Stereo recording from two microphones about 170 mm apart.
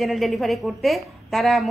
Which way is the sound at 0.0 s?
Centre (ahead or behind).